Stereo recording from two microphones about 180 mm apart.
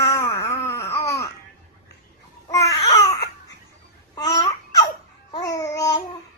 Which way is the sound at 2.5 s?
20° left (ahead or behind).